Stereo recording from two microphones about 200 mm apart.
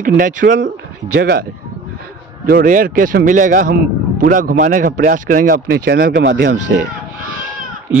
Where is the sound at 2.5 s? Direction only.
45° right (ahead or behind); by 6.5 s 65° right (ahead or behind).